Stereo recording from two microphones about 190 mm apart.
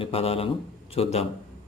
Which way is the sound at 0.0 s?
30° left (ahead or behind).